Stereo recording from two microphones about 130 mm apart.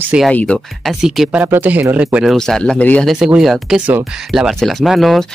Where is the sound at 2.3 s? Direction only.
5° left (ahead or behind).